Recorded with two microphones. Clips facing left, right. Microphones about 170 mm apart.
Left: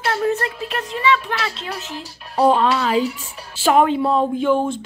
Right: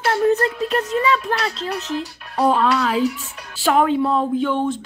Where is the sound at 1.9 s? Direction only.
30° left (ahead or behind).